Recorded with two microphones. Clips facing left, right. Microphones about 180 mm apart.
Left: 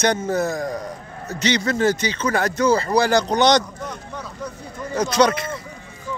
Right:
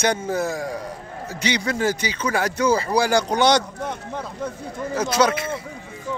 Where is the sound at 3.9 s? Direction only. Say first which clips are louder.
Right 3 dB; 25° right (ahead or behind).